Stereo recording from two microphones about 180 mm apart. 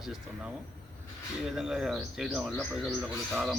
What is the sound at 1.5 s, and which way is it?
Speech, centre (ahead or behind).